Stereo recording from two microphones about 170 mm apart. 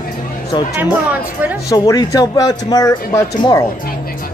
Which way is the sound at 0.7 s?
10° right (ahead or behind).